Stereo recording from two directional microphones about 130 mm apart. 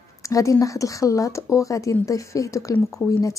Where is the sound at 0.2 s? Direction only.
25° left (ahead or behind).